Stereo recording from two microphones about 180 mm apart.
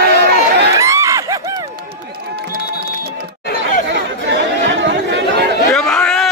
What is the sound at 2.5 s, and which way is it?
Music, 55° right (ahead or behind).